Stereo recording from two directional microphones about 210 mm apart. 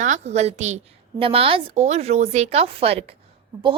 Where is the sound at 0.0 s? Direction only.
35° right (ahead or behind).